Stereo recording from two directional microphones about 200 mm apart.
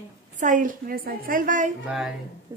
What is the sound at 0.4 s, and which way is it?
A woman's voice, 40° right (ahead or behind).